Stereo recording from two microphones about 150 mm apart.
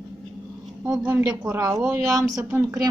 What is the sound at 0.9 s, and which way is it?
A woman's voice, 20° right (ahead or behind).